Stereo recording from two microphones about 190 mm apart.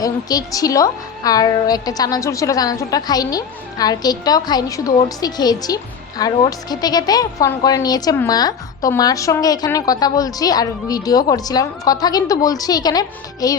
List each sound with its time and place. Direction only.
0.0 s a woman's voice: 20° left (ahead or behind)